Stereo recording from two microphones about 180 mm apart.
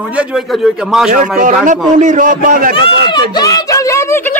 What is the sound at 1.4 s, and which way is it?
A man's voice, 45° right (ahead or behind).